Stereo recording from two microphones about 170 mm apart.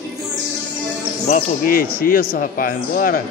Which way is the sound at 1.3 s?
55° left (ahead or behind).